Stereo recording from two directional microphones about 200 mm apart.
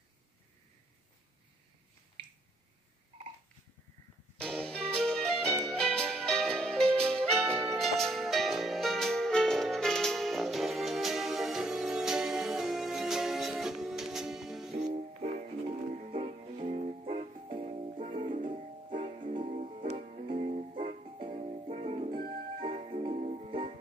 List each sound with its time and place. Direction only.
4.4 s music: 5° left (ahead or behind)
14.7 s music: 35° right (ahead or behind)
18.2 s music: 40° right (ahead or behind)